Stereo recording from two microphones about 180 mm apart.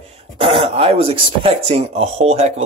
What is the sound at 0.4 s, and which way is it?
Speech, 30° right (ahead or behind).